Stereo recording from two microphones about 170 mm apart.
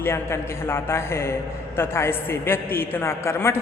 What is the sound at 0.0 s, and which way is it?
A man's voice, 15° left (ahead or behind).